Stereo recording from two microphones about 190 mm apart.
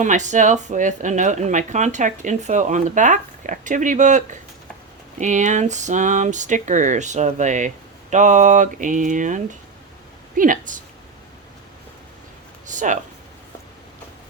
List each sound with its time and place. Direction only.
0.0 s a woman's voice: 40° right (ahead or behind)
12.7 s speech: 40° right (ahead or behind)